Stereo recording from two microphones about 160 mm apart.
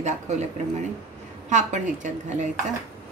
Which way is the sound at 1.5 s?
50° right (ahead or behind).